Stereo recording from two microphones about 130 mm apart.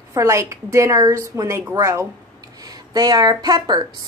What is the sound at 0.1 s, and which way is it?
A woman's voice, 25° right (ahead or behind).